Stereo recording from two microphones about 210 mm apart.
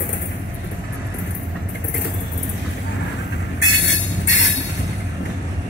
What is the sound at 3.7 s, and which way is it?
Train, 60° left (ahead or behind).